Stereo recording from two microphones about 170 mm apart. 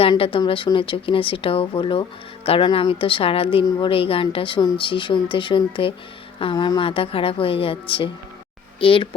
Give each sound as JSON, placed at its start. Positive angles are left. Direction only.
{"t": 0.0, "sound": "speech", "side_deg": 30}